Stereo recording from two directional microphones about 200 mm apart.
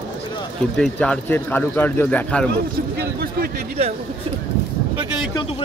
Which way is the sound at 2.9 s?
50° right (ahead or behind).